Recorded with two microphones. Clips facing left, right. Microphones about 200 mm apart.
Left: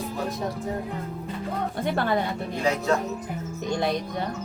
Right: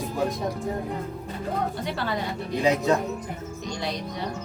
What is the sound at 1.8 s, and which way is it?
Speech, 50° left (ahead or behind).